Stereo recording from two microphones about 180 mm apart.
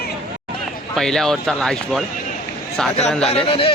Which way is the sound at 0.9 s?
Centre (ahead or behind).